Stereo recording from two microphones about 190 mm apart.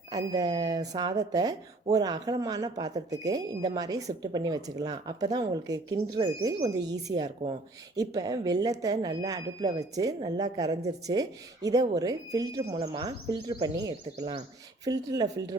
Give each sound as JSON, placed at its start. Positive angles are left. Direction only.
{"t": 0.1, "sound": "speech", "side_deg": -20}